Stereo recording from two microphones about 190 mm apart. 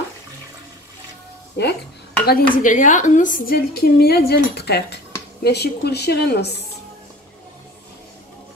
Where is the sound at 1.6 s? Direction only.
60° left (ahead or behind).